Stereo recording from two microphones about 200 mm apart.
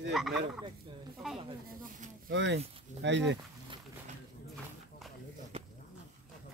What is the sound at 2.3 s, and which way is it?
Speech, 65° right (ahead or behind).